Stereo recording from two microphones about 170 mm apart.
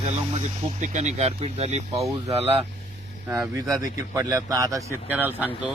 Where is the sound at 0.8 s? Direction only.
45° right (ahead or behind).